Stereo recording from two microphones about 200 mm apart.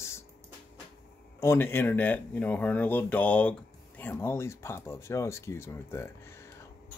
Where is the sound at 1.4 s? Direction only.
10° left (ahead or behind).